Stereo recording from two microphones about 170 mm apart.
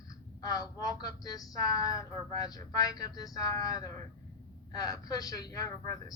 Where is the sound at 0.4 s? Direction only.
20° left (ahead or behind).